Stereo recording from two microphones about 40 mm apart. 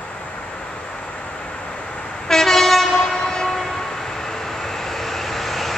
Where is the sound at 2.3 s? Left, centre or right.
Centre.